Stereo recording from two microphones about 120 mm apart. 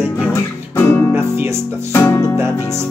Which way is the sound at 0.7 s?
20° left (ahead or behind).